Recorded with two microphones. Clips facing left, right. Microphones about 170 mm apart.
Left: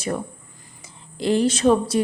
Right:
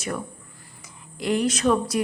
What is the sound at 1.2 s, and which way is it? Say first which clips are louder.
Speech: left 4 dB; 30° left (ahead or behind).